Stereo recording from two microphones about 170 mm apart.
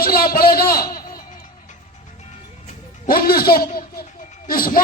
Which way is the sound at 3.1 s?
60° left (ahead or behind).